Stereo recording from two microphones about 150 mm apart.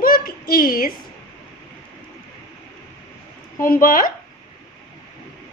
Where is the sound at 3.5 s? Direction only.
70° left (ahead or behind).